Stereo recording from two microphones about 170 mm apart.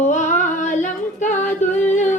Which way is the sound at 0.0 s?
45° left (ahead or behind).